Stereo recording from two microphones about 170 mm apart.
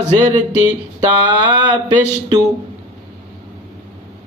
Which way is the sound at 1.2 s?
25° right (ahead or behind).